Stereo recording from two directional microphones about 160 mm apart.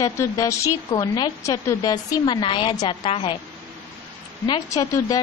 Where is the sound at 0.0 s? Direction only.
20° left (ahead or behind).